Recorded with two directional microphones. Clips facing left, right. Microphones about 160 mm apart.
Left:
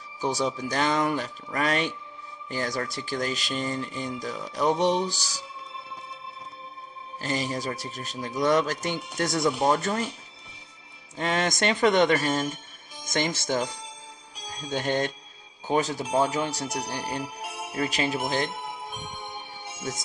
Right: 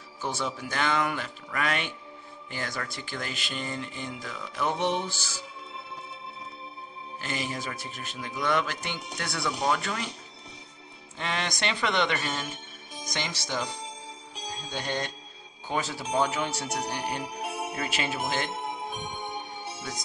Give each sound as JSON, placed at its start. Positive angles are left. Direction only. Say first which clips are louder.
{"t": 0.2, "sound": "speech", "louder": "left 5 dB", "side_deg": 40}
{"t": 7.2, "sound": "speech", "louder": "left 4 dB", "side_deg": 40}
{"t": 11.1, "sound": "speech", "louder": "left 6 dB", "side_deg": 45}
{"t": 14.7, "sound": "speech", "louder": "left 7 dB", "side_deg": 50}
{"t": 17.4, "sound": "music", "louder": "left 1 dB", "side_deg": -35}
{"t": 17.8, "sound": "speech", "louder": "left 6 dB", "side_deg": 35}